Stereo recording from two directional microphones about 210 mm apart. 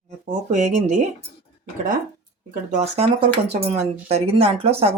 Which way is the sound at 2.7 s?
30° right (ahead or behind).